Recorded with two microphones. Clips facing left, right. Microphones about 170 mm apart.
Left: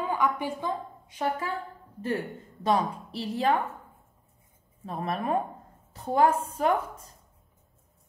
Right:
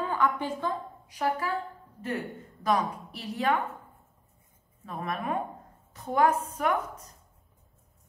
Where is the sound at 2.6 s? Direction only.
30° left (ahead or behind).